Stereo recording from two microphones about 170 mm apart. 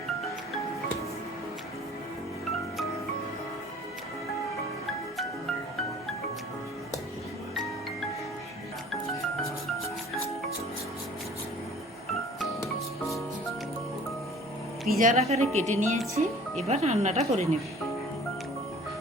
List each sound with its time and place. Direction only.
14.8 s speech: 50° right (ahead or behind)